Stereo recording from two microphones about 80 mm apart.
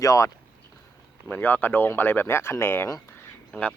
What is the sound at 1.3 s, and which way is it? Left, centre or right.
Speech, left.